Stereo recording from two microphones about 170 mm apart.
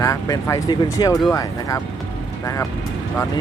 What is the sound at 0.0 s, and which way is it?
Speech, 20° left (ahead or behind).